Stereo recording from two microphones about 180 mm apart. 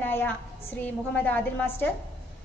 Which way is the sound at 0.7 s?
10° left (ahead or behind).